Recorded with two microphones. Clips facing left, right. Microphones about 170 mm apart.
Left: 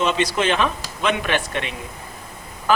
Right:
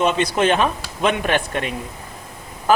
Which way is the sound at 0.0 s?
55° right (ahead or behind).